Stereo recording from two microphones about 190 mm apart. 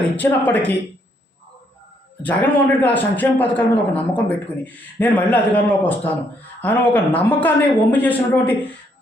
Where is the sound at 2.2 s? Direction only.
10° left (ahead or behind).